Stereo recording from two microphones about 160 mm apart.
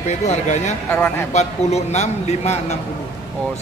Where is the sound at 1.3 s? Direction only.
45° left (ahead or behind).